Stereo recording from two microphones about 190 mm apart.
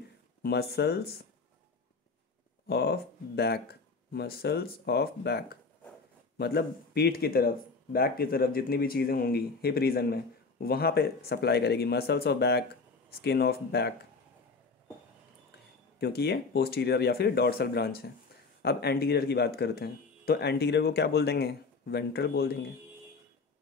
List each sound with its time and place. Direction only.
0.4 s speech: 55° left (ahead or behind)
2.7 s speech: 55° left (ahead or behind)
16.0 s speech: 60° left (ahead or behind)